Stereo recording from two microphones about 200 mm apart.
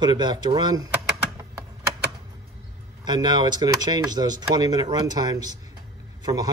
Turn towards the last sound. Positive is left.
turn(degrees=-20)  # may be behind; listen again after turning